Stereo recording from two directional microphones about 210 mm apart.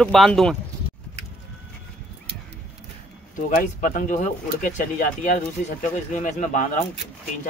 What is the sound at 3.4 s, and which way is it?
Speech, 40° left (ahead or behind).